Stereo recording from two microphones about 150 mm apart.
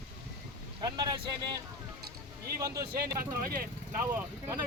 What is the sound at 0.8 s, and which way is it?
Speech, 25° right (ahead or behind).